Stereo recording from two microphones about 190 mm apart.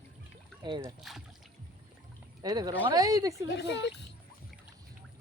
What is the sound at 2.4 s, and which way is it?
Speech, 20° right (ahead or behind).